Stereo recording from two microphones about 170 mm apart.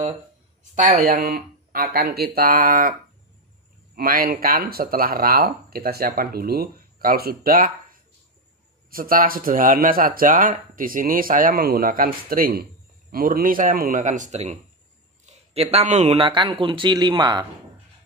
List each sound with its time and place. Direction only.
0.7 s speech: 50° right (ahead or behind)
3.9 s speech: 60° right (ahead or behind)
8.9 s speech: 55° right (ahead or behind); by 17.5 s 25° right (ahead or behind)